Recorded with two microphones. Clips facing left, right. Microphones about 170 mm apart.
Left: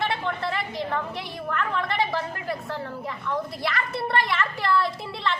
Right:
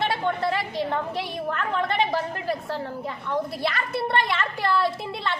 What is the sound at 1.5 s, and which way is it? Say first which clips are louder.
Speech: even; 20° right (ahead or behind).